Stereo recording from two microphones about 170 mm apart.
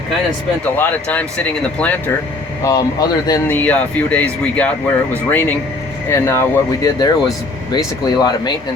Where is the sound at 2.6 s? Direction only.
20° left (ahead or behind).